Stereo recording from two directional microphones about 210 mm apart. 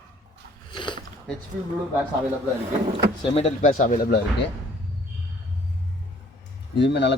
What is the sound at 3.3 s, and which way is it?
Speech, 30° left (ahead or behind).